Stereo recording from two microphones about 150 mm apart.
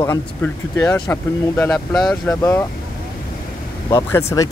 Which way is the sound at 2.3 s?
20° left (ahead or behind).